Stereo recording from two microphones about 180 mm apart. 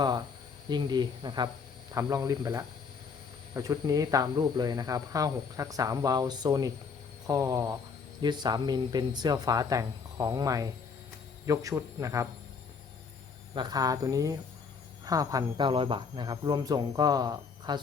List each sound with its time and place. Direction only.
0.7 s a man's voice: 25° right (ahead or behind)
13.5 s speech: 25° right (ahead or behind)